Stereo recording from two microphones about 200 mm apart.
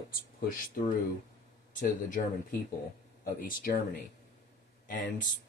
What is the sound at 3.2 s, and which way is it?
Speech, 45° left (ahead or behind).